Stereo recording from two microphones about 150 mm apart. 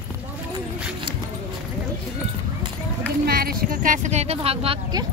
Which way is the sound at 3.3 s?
85° right.